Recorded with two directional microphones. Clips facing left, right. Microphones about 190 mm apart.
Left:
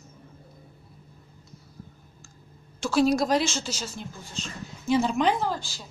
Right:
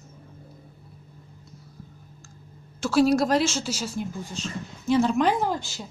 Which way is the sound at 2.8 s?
5° right (ahead or behind).